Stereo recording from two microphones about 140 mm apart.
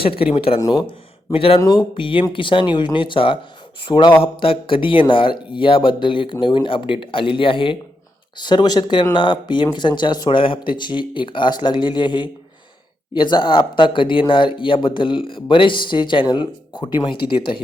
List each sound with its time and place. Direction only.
0.0 s speech: 40° left (ahead or behind)
0.6 s speech: 30° left (ahead or behind)
1.3 s speech: 40° left (ahead or behind)